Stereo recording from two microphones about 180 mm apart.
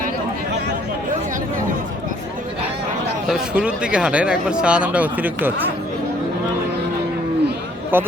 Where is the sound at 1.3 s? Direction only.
45° right (ahead or behind).